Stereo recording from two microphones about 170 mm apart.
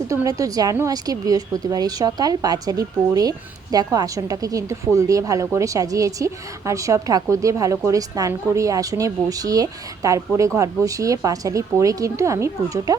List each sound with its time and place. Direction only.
0.1 s a woman's voice: 20° right (ahead or behind)